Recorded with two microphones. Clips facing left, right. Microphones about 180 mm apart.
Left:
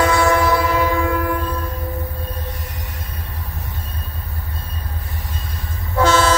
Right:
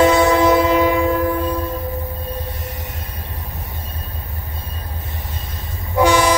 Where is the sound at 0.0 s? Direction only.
20° right (ahead or behind).